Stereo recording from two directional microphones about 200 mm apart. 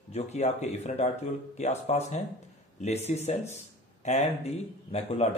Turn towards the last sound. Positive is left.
turn(degrees=30)  # may be behind; listen again after turning